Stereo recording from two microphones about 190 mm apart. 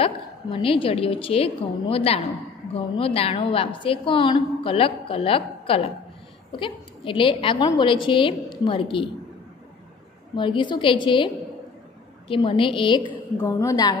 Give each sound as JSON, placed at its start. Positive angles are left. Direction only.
{"t": 0.0, "sound": "a woman's voice", "side_deg": 30}
{"t": 10.3, "sound": "a woman's voice", "side_deg": 25}
{"t": 12.3, "sound": "a woman's voice", "side_deg": 25}